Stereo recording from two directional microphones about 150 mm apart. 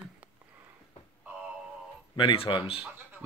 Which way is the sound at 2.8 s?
10° right (ahead or behind).